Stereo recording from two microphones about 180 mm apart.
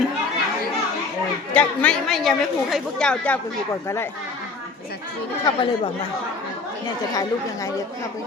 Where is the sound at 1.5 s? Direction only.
5° left (ahead or behind).